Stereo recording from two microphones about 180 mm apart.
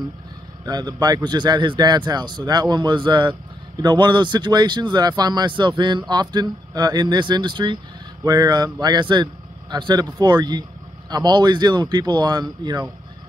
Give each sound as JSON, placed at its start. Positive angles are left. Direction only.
{"t": 0.7, "sound": "speech", "side_deg": -20}